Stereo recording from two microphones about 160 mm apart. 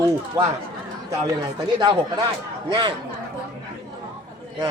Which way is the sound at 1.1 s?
25° right (ahead or behind).